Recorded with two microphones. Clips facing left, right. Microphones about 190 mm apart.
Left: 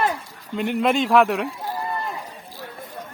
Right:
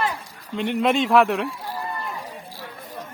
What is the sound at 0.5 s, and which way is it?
Speech, 5° left (ahead or behind).